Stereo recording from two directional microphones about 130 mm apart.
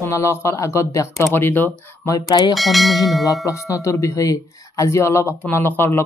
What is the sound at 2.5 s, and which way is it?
Speech, centre (ahead or behind).